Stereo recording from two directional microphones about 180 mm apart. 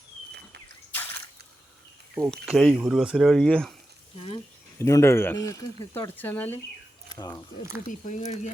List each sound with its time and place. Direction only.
0.3 s a sound: 65° right (ahead or behind)
2.1 s speech: centre (ahead or behind)
4.8 s speech: 15° left (ahead or behind)
7.1 s speech: 20° left (ahead or behind)
7.9 s speech: 45° left (ahead or behind)